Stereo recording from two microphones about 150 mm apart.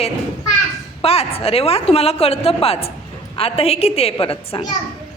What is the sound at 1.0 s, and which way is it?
A woman's voice, 40° left (ahead or behind).